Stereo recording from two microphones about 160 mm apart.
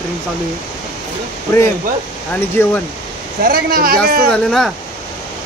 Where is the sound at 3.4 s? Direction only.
65° right (ahead or behind).